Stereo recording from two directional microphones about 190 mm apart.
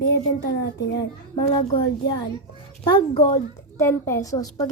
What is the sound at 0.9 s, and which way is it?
A woman's voice, 25° left (ahead or behind).